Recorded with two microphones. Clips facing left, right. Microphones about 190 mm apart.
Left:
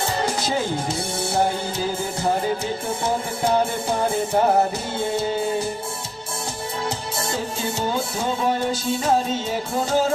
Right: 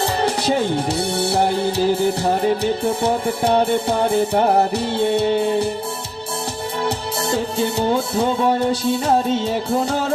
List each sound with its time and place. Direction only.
0.9 s music: 65° right (ahead or behind)
4.7 s music: 65° right (ahead or behind)
7.6 s music: 65° right (ahead or behind)